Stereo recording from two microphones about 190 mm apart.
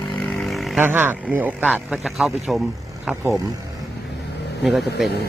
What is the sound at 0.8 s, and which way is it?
Speech, 10° right (ahead or behind).